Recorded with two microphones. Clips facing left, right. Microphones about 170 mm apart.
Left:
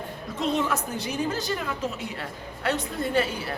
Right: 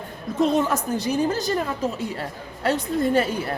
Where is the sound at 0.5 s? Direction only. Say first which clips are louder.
Right 5 dB; 40° right (ahead or behind).